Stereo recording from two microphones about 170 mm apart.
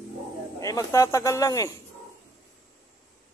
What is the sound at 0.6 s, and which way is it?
Speech, 20° left (ahead or behind).